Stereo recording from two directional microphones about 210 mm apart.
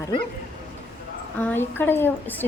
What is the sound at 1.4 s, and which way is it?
Speech, 10° left (ahead or behind).